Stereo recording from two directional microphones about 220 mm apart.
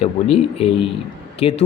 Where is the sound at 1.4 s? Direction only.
25° left (ahead or behind).